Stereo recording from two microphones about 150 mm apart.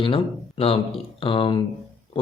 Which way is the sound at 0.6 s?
40° left (ahead or behind).